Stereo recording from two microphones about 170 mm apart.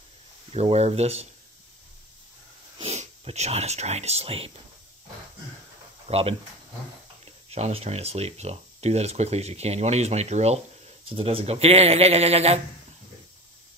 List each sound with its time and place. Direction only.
0.5 s speech: 35° right (ahead or behind)
2.8 s speech: 35° right (ahead or behind)
6.0 s speech: 35° right (ahead or behind)